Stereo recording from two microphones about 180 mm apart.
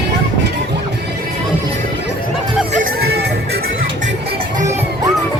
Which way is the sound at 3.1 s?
65° right (ahead or behind).